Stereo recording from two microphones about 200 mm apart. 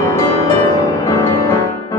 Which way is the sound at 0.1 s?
15° left (ahead or behind).